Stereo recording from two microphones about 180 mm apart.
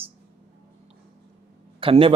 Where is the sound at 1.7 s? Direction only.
30° right (ahead or behind).